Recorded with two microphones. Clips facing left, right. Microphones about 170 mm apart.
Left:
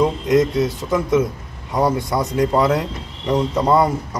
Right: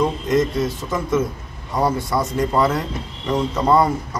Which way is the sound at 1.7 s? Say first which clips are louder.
Left 1 dB; 15° left (ahead or behind).